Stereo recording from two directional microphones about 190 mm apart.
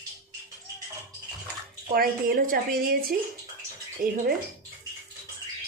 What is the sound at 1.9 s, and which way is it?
A woman's voice, 50° right (ahead or behind).